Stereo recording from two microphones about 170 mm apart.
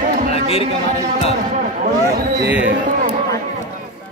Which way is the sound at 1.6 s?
60° right (ahead or behind).